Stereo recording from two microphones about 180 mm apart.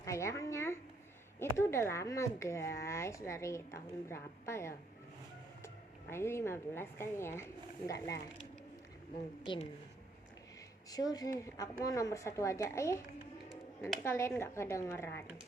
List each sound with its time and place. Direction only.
0.0 s a sound: 15° left (ahead or behind)
1.4 s speech: 15° left (ahead or behind)
9.4 s speech: 25° left (ahead or behind)
10.9 s speech: 20° left (ahead or behind)
14.0 s speech: 15° left (ahead or behind)